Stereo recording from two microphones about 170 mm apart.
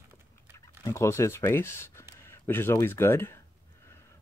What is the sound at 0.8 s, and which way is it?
Speech, 15° left (ahead or behind).